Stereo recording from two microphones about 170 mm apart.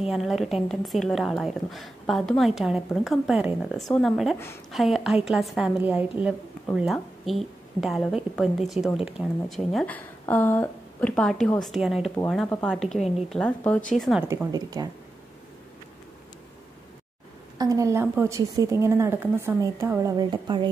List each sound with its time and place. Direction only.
0.0 s a woman's voice: centre (ahead or behind)
14.2 s a woman's voice: 15° right (ahead or behind)
17.6 s a woman's voice: 20° right (ahead or behind)